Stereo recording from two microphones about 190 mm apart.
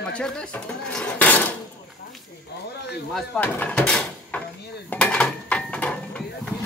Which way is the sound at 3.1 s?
5° left (ahead or behind).